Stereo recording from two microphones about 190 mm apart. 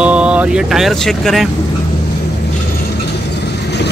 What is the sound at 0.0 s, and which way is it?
Speech, 5° right (ahead or behind).